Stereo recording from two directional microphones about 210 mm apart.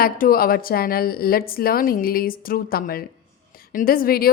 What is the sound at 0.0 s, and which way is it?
A woman's voice, 45° left (ahead or behind).